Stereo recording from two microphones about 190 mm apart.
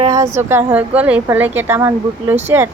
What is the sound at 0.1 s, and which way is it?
Speech, 15° right (ahead or behind).